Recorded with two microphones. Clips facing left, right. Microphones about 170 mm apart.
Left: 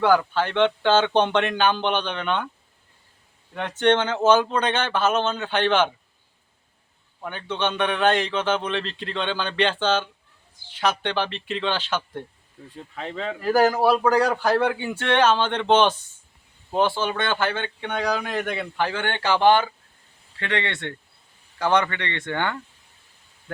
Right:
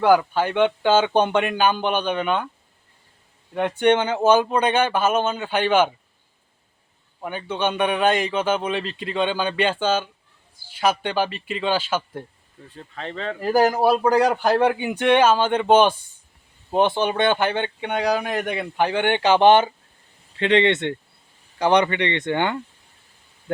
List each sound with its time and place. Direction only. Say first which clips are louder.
0.0 s speech: right 2 dB; 10° right (ahead or behind)
3.5 s speech: right 2 dB; 10° right (ahead or behind)
7.2 s speech: right 2 dB; 10° right (ahead or behind)
12.7 s speech: even; 5° left (ahead or behind)
13.4 s speech: right 1 dB; 15° right (ahead or behind)